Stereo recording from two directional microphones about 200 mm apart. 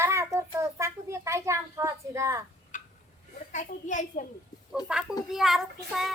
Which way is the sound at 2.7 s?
40° left (ahead or behind).